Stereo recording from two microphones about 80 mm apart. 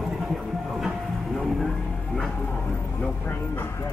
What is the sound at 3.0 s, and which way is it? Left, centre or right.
Speech, left.